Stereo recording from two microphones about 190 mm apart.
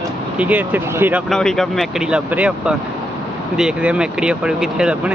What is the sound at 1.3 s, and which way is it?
Speech, centre (ahead or behind).